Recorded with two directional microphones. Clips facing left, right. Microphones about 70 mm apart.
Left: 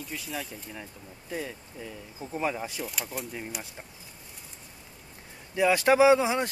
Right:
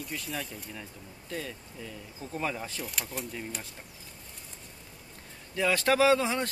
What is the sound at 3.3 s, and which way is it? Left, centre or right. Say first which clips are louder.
Speech: left 1 dB; centre.